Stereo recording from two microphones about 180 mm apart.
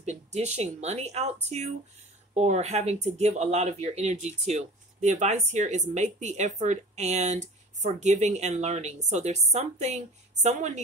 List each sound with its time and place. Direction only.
0.0 s speech: 40° right (ahead or behind)